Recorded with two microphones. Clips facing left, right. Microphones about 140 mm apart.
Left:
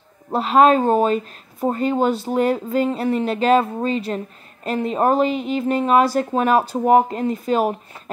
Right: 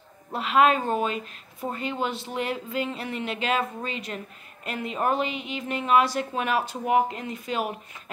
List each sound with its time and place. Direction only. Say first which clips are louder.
0.3 s speech: left 7 dB; 35° left (ahead or behind)